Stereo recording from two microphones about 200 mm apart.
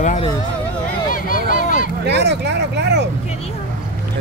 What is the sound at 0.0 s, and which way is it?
Speech, 35° left (ahead or behind).